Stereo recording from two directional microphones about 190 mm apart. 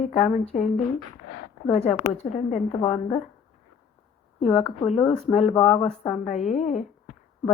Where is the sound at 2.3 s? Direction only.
40° left (ahead or behind).